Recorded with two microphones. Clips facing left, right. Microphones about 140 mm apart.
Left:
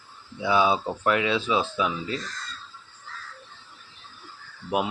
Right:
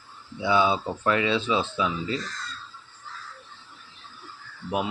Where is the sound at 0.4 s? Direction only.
10° left (ahead or behind).